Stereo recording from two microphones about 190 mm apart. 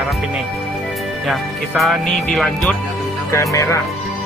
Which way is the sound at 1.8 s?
Centre (ahead or behind).